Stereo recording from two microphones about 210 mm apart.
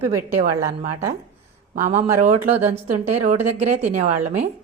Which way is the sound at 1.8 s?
35° right (ahead or behind).